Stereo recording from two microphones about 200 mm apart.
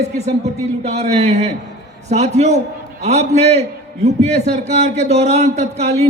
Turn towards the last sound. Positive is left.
turn(degrees=-35)  # may be behind; listen again after turning